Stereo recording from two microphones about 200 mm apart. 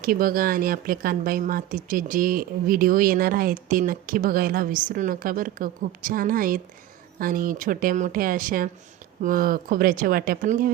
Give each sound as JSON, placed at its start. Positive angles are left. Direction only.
{"t": 0.0, "sound": "speech", "side_deg": -45}